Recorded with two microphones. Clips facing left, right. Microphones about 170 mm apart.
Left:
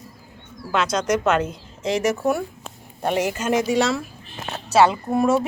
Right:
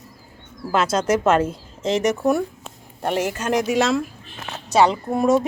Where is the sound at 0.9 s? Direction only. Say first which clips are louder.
Right 2 dB; 30° right (ahead or behind).